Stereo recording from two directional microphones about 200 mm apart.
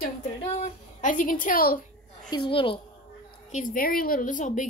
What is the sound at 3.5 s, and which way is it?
A woman's voice, 45° left (ahead or behind).